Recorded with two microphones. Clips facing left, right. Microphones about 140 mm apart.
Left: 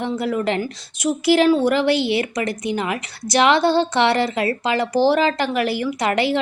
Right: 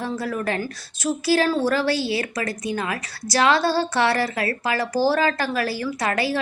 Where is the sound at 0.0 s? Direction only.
20° left (ahead or behind).